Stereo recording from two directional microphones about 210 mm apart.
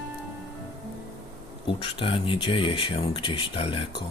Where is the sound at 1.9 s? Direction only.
25° left (ahead or behind).